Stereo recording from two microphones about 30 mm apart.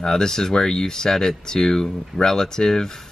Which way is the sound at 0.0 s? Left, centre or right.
Centre.